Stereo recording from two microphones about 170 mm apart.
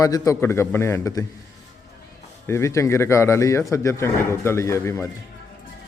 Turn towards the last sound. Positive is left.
turn(degrees=15)  # may be behind; listen again after turning